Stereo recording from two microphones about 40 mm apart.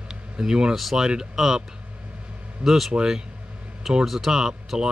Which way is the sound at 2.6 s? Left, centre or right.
Centre.